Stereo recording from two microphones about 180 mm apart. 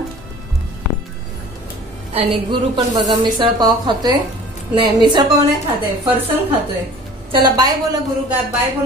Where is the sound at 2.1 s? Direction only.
30° right (ahead or behind).